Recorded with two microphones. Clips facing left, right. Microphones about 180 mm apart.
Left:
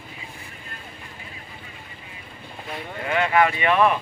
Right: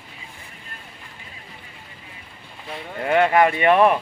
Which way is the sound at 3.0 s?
50° right (ahead or behind).